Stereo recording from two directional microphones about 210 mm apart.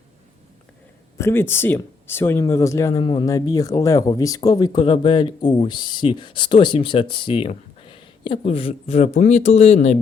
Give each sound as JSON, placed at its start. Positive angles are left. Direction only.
{"t": 1.2, "sound": "speech", "side_deg": 10}